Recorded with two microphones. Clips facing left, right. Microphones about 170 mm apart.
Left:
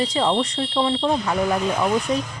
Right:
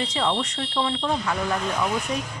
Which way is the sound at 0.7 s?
25° left (ahead or behind).